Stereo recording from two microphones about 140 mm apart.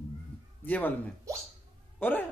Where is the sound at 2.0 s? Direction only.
15° left (ahead or behind).